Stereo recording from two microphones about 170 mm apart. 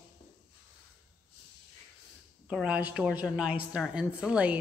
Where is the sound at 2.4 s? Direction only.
5° right (ahead or behind).